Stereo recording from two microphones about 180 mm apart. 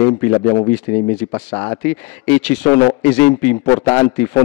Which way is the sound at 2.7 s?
30° left (ahead or behind).